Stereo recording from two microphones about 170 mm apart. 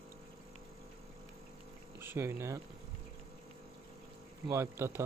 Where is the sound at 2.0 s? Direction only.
15° right (ahead or behind).